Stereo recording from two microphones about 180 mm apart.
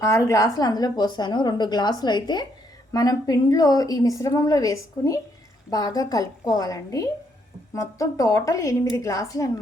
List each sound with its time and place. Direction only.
0.0 s a woman's voice: 15° left (ahead or behind)